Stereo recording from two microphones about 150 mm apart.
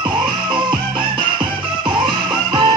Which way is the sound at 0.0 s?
30° right (ahead or behind).